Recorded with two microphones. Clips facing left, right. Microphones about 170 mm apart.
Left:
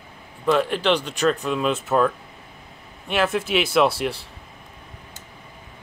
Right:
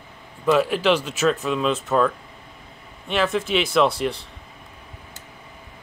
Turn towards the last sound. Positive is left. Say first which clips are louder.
# even
turn(degrees=0)  # may be behind; listen again after turning